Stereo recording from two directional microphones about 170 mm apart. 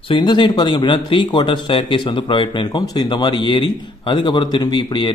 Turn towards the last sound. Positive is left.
turn(degrees=25)  # may be behind; listen again after turning